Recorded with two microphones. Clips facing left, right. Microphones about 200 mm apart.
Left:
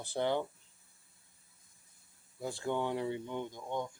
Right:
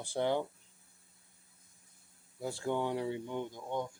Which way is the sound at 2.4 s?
10° right (ahead or behind).